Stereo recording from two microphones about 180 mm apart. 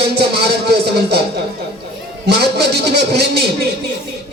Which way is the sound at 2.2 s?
65° right (ahead or behind).